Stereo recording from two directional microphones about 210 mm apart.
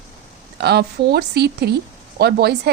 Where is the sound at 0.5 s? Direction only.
50° right (ahead or behind).